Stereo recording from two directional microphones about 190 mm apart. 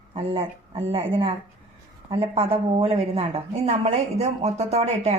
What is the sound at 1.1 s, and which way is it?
A woman's voice, 30° right (ahead or behind).